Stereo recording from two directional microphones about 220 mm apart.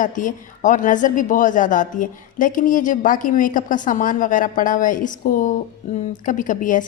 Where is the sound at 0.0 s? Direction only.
35° left (ahead or behind).